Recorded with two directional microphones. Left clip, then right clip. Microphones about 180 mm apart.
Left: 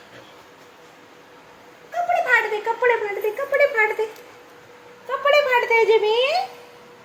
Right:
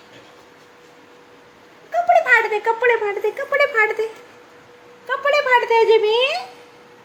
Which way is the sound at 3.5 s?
55° right (ahead or behind).